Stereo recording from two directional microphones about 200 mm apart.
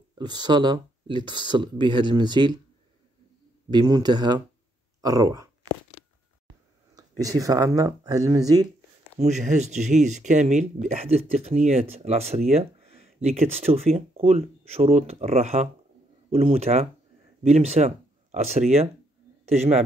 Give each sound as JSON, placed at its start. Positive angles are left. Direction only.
{"t": 0.2, "sound": "speech", "side_deg": -20}
{"t": 3.7, "sound": "speech", "side_deg": -20}
{"t": 7.0, "sound": "speech", "side_deg": -15}
{"t": 9.2, "sound": "speech", "side_deg": -35}